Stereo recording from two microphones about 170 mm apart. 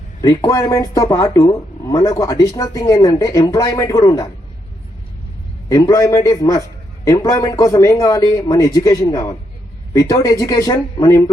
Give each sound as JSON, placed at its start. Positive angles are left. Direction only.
{"t": 0.2, "sound": "speech", "side_deg": 20}
{"t": 5.6, "sound": "speech", "side_deg": 20}